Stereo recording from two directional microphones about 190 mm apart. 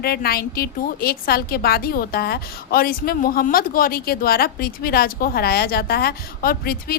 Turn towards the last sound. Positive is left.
turn(degrees=50)  # may be behind; listen again after turning